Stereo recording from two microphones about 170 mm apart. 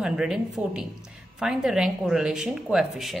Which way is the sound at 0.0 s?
5° right (ahead or behind).